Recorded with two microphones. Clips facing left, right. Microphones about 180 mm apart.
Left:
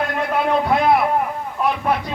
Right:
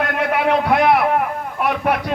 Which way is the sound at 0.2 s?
70° right (ahead or behind).